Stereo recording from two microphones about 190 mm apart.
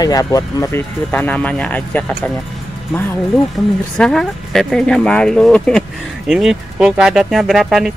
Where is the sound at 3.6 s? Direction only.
Centre (ahead or behind).